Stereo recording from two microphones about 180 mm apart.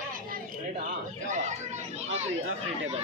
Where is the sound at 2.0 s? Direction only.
40° right (ahead or behind).